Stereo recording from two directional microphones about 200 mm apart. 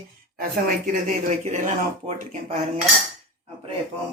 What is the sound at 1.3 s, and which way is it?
Cutlery, 40° right (ahead or behind).